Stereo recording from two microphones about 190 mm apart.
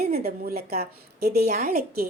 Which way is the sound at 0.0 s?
55° right (ahead or behind).